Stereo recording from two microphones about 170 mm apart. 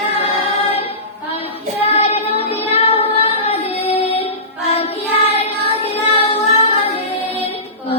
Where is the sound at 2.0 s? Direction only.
35° left (ahead or behind).